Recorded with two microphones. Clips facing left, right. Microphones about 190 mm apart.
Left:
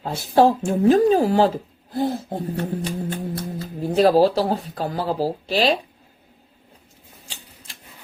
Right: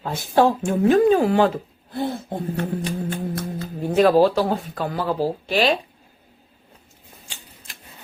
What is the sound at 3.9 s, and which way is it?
Speech, 35° left (ahead or behind).